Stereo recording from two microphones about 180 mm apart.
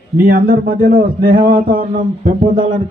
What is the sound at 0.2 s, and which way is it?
Mantra, 50° right (ahead or behind).